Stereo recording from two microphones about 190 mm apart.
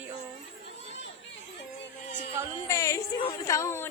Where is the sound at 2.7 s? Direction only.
15° left (ahead or behind).